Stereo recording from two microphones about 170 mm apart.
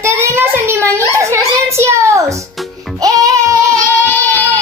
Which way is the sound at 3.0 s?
20° right (ahead or behind).